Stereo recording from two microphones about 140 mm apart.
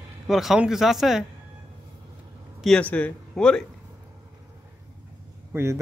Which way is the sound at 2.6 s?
10° left (ahead or behind).